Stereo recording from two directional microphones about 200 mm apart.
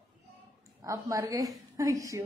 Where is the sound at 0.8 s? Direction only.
15° right (ahead or behind).